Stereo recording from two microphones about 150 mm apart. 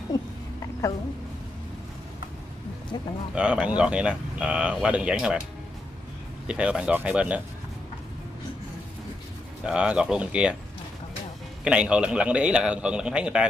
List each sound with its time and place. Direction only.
0.1 s a sound: 20° left (ahead or behind)
2.9 s speech: 25° left (ahead or behind)
3.3 s speech: 5° right (ahead or behind)
6.4 s speech: 5° right (ahead or behind)
9.7 s speech: 5° right (ahead or behind)
11.6 s speech: 5° right (ahead or behind)